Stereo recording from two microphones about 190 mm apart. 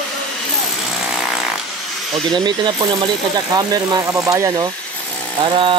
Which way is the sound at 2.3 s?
25° right (ahead or behind).